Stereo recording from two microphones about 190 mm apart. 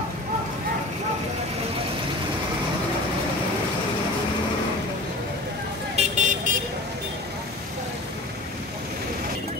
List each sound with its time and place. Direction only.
5.9 s vehicle: 40° right (ahead or behind)